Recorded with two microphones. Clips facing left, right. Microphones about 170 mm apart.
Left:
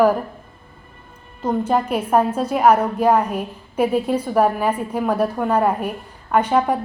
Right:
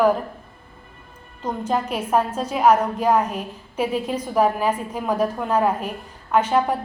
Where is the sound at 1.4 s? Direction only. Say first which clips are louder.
Left 4 dB; 10° left (ahead or behind).